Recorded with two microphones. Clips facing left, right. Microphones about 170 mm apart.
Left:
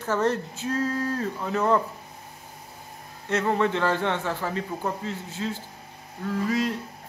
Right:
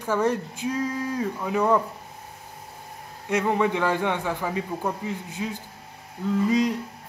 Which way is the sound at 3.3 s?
10° right (ahead or behind).